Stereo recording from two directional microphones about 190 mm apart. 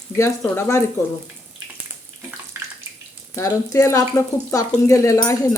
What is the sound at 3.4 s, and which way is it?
Speech, 15° left (ahead or behind).